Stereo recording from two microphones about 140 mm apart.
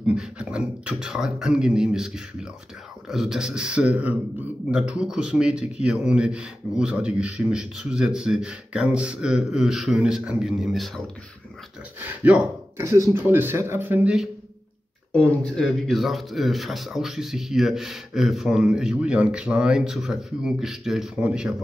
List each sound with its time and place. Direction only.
0.0 s a man's voice: 5° right (ahead or behind)
12.0 s speech: 15° right (ahead or behind)
15.1 s a man's voice: 10° left (ahead or behind)